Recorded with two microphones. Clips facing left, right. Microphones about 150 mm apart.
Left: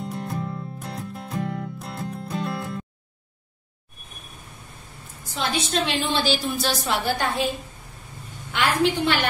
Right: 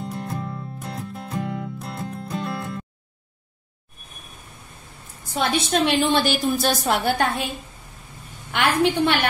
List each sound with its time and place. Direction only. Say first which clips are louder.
0.0 s music: even; centre (ahead or behind)
5.3 s a woman's voice: right 4 dB; 60° right (ahead or behind)
8.5 s a woman's voice: right 2 dB; 60° right (ahead or behind)